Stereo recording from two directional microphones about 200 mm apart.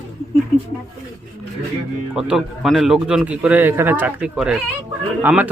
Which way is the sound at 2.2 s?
Centre (ahead or behind).